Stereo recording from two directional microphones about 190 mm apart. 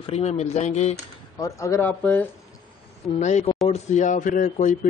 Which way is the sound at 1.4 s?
15° left (ahead or behind).